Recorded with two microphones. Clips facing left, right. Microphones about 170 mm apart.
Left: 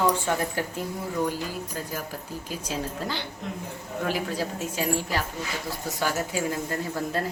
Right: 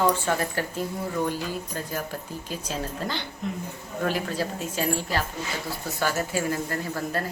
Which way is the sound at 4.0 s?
10° left (ahead or behind).